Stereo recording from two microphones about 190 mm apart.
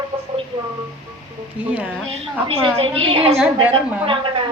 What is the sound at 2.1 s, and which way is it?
A woman's voice, 30° right (ahead or behind).